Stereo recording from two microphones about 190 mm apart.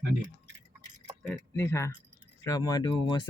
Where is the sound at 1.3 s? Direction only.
15° left (ahead or behind).